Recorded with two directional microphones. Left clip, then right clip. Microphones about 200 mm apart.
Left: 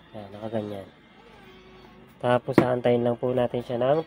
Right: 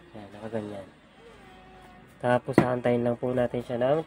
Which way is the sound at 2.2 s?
5° left (ahead or behind).